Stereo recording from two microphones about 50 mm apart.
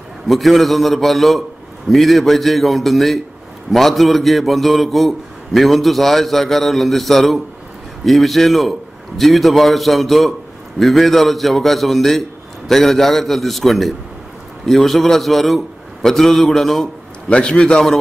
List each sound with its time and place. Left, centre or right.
0.3 s a man's voice: centre
17.3 s a man's voice: centre